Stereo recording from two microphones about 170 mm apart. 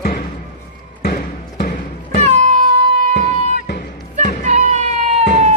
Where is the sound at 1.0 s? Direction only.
65° left (ahead or behind).